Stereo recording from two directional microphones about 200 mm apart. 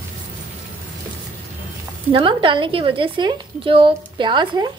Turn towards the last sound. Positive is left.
turn(degrees=-20)  # may be behind; listen again after turning